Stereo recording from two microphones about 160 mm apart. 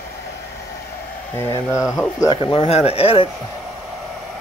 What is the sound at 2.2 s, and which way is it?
Speech, 25° left (ahead or behind).